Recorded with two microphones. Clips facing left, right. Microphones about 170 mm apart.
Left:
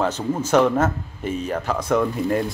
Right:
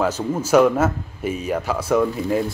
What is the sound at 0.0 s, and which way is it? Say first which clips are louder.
Speech: right 1 dB; 5° right (ahead or behind).